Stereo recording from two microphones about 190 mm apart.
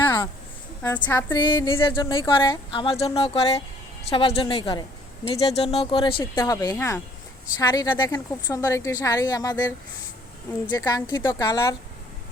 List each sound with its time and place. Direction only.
0.8 s a woman's voice: 10° left (ahead or behind)
1.3 s speech: 25° left (ahead or behind)